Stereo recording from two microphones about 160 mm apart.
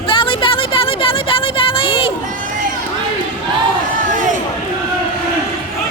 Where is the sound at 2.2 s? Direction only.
55° right (ahead or behind).